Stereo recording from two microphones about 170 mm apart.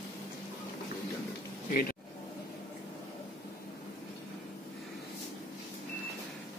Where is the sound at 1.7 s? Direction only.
60° left (ahead or behind).